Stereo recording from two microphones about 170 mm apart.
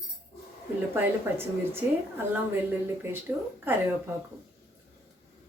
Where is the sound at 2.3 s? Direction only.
15° right (ahead or behind).